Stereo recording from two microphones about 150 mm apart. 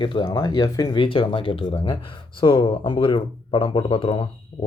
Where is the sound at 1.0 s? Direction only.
35° left (ahead or behind).